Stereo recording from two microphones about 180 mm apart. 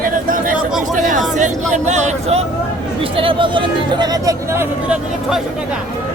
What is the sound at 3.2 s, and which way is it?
Speech, 30° right (ahead or behind).